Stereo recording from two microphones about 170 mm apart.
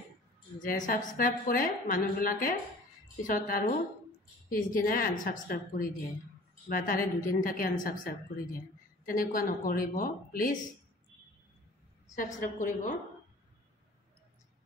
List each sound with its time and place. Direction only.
0.6 s a woman's voice: 50° left (ahead or behind)
12.2 s a woman's voice: 50° left (ahead or behind)